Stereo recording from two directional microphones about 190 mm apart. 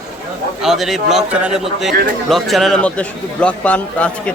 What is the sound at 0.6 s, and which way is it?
A man's voice, centre (ahead or behind).